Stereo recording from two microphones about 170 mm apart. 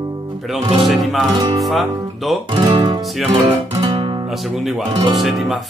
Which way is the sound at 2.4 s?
25° right (ahead or behind).